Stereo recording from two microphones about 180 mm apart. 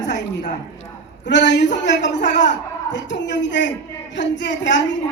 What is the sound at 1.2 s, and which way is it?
A woman's voice, 75° left (ahead or behind).